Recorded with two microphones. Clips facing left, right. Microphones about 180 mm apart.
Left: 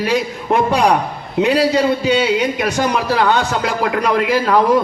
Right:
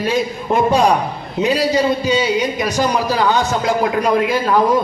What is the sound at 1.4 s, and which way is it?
A man's voice, 65° left (ahead or behind).